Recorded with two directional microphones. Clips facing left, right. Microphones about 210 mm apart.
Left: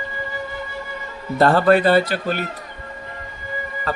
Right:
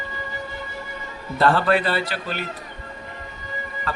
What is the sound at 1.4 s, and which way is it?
Speech, 45° left (ahead or behind).